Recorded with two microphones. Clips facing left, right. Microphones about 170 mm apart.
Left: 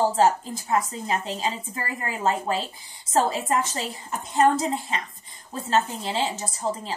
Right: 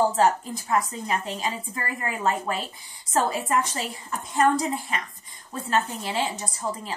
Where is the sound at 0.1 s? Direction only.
25° left (ahead or behind).